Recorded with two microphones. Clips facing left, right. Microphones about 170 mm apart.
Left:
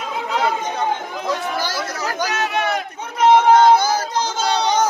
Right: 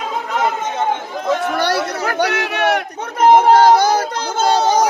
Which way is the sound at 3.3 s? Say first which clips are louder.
Right 2 dB; 45° right (ahead or behind).